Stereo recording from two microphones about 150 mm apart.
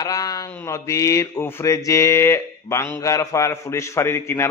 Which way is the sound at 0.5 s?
20° left (ahead or behind).